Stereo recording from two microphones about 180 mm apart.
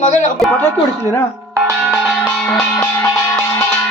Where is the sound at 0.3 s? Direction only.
5° left (ahead or behind).